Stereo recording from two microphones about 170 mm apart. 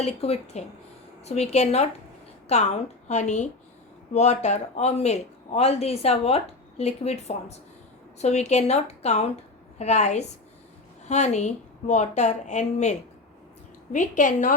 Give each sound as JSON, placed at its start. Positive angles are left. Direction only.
{"t": 0.0, "sound": "a woman's voice", "side_deg": 35}